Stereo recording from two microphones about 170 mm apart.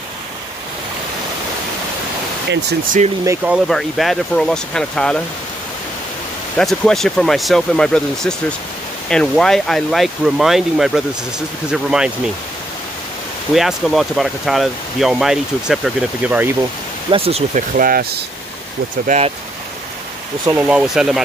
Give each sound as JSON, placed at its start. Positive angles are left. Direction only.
{"t": 3.4, "sound": "speech", "side_deg": 0}
{"t": 6.5, "sound": "speech", "side_deg": 5}
{"t": 13.6, "sound": "speech", "side_deg": 0}
{"t": 17.1, "sound": "speech", "side_deg": -35}
{"t": 17.7, "sound": "speech", "side_deg": -55}
{"t": 19.0, "sound": "speech", "side_deg": -40}
{"t": 20.4, "sound": "speech", "side_deg": -10}